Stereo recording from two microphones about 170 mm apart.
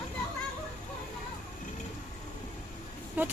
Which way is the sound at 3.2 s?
10° right (ahead or behind).